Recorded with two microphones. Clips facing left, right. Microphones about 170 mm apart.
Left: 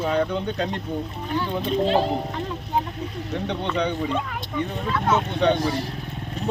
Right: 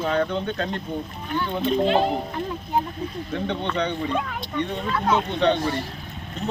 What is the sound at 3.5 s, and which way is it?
Speech, 10° left (ahead or behind).